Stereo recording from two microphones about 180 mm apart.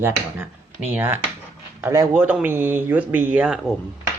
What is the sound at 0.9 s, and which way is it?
A man's voice, 10° right (ahead or behind).